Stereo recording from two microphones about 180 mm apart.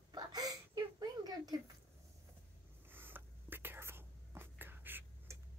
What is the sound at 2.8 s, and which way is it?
Whispering, 10° right (ahead or behind).